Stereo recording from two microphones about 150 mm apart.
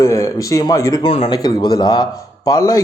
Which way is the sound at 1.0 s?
40° left (ahead or behind).